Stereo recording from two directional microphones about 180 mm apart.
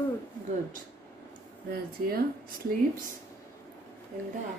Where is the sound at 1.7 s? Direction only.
55° right (ahead or behind).